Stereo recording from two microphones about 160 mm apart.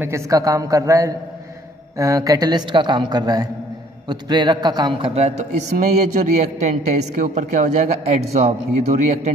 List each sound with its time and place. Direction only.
0.0 s a man's voice: 20° right (ahead or behind); by 9.3 s 45° right (ahead or behind)